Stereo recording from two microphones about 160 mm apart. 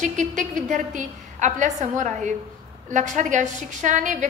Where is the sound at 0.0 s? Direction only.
50° right (ahead or behind).